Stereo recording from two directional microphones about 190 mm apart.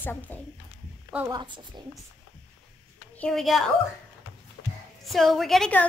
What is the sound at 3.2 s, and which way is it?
Speech, centre (ahead or behind).